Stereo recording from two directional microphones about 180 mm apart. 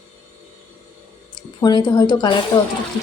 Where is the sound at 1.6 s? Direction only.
25° left (ahead or behind).